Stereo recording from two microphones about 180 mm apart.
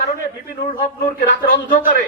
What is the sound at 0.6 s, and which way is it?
Speech, 55° left (ahead or behind).